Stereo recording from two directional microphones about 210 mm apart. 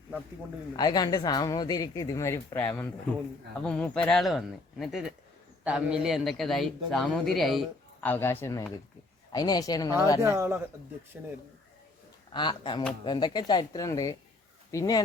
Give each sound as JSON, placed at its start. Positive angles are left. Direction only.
{"t": 0.8, "sound": "a man's voice", "side_deg": 20}
{"t": 10.2, "sound": "speech", "side_deg": -15}
{"t": 12.3, "sound": "speech", "side_deg": 20}